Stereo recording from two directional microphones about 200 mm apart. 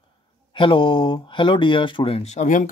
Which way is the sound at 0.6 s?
25° left (ahead or behind).